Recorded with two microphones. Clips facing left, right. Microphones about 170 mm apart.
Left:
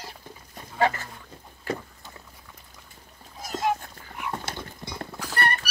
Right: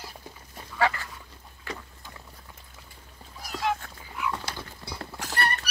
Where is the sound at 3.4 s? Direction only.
45° left (ahead or behind).